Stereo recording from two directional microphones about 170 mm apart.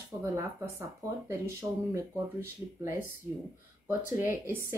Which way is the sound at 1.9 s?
15° right (ahead or behind).